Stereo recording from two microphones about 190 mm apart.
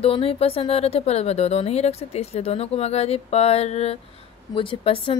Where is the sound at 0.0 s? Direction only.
30° left (ahead or behind).